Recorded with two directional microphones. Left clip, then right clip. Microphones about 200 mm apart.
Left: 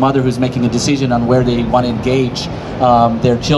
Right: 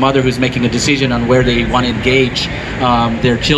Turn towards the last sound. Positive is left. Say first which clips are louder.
# left 3 dB
turn(degrees=60)  # may be behind; listen again after turning